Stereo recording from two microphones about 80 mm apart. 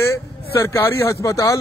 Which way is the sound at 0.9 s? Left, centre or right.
Left.